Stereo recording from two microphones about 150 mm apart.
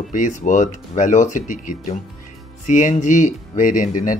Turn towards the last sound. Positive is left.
turn(degrees=60)  # may be behind; listen again after turning